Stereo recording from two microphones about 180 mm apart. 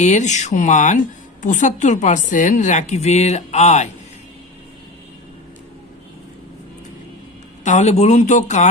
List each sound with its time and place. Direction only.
0.0 s a woman's voice: 40° left (ahead or behind)
7.6 s a woman's voice: 40° left (ahead or behind)